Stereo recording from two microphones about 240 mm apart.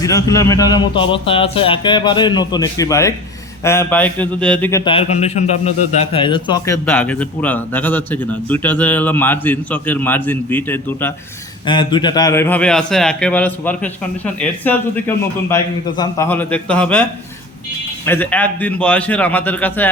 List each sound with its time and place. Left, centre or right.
0.0 s a man's voice: centre
4.9 s a man's voice: left
6.8 s a man's voice: centre
11.6 s a man's voice: centre